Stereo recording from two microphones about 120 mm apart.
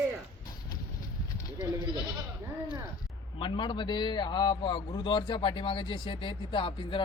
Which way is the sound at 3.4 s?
40° left (ahead or behind).